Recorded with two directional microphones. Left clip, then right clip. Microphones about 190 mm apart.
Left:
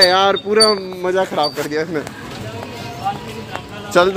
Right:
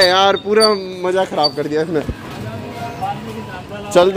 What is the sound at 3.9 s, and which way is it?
Speech, 15° right (ahead or behind).